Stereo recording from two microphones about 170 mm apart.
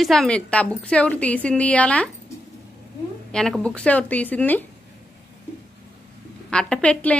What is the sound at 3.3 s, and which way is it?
A woman's voice, 5° left (ahead or behind).